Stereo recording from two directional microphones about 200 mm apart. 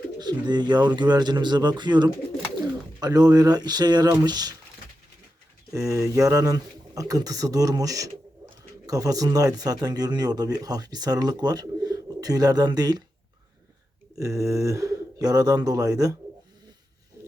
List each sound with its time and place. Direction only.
0.2 s speech: 20° right (ahead or behind)
5.7 s speech: 15° right (ahead or behind)
14.2 s speech: 15° right (ahead or behind)